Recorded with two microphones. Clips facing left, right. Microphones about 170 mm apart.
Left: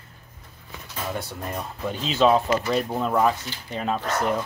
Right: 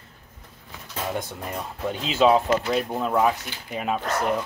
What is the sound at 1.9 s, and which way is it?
Speech, 10° right (ahead or behind).